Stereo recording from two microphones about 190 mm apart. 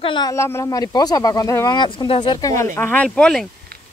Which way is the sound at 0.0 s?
25° left (ahead or behind).